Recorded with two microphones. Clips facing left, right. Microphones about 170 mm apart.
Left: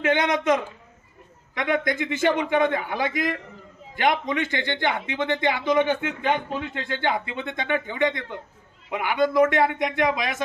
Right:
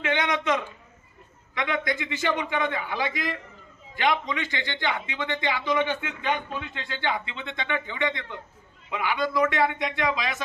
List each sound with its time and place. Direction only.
0.0 s a man's voice: 45° left (ahead or behind)